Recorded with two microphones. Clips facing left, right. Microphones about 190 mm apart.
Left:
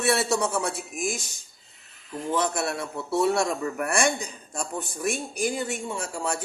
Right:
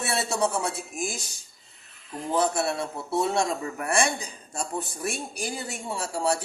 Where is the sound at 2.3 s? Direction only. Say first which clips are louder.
Right 2 dB; 30° right (ahead or behind).